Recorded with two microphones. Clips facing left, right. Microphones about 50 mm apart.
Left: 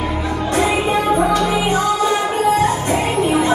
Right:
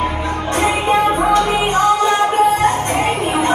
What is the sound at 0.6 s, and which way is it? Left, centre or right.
Music, right.